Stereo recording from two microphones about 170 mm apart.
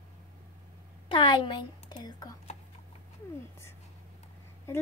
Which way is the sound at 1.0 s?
30° left (ahead or behind).